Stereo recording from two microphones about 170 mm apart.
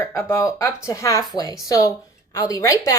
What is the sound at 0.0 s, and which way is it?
Speech, 15° left (ahead or behind).